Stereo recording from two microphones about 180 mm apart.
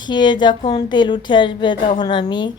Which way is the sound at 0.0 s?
25° left (ahead or behind).